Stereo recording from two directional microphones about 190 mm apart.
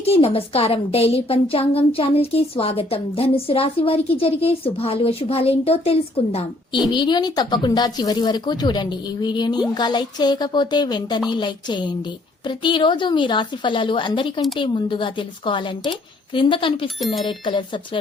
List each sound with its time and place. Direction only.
0.0 s a woman's voice: 30° left (ahead or behind)